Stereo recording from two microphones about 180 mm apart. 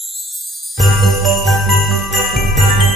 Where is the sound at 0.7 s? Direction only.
Centre (ahead or behind).